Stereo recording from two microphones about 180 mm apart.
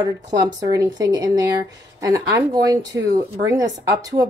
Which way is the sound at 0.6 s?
20° right (ahead or behind).